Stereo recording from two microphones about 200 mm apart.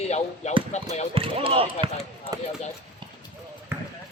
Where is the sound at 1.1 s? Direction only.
30° right (ahead or behind).